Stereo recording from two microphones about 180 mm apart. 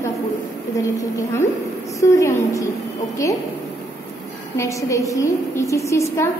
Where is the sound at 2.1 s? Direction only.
15° left (ahead or behind).